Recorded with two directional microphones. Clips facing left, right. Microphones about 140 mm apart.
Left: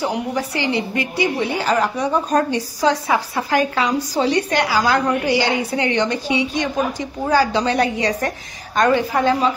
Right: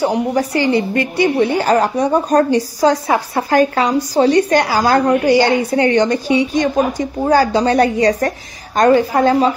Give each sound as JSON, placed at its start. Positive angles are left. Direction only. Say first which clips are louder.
{"t": 0.1, "sound": "a woman's voice", "louder": "right 6 dB", "side_deg": -40}